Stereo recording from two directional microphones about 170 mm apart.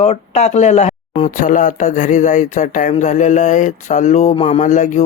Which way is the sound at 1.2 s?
50° left (ahead or behind).